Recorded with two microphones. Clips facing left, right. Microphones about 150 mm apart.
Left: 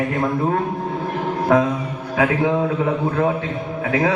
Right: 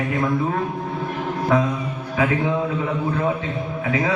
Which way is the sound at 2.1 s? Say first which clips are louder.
Left 3 dB; 60° left (ahead or behind).